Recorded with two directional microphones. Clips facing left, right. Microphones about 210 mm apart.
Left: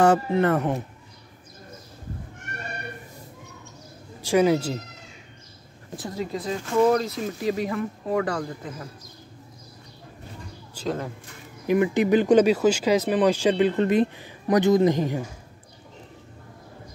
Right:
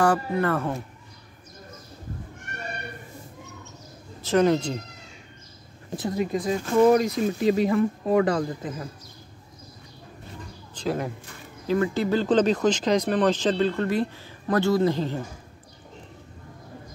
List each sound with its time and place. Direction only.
0.0 s speech: 25° left (ahead or behind)
4.2 s speech: 10° left (ahead or behind)
5.9 s speech: 15° right (ahead or behind)
10.8 s a sound: 10° left (ahead or behind)
11.6 s speech: 15° left (ahead or behind)